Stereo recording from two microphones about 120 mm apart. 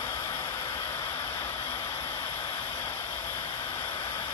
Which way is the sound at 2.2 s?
35° left (ahead or behind).